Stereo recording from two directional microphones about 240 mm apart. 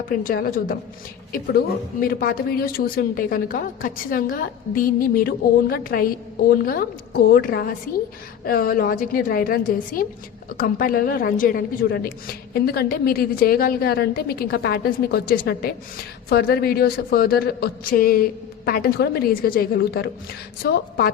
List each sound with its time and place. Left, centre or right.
0.1 s a woman's voice: left